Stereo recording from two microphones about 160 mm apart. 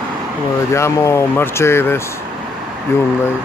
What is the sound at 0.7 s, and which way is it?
Speech, 15° left (ahead or behind).